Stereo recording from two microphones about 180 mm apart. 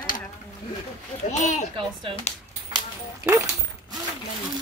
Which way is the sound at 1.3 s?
40° left (ahead or behind).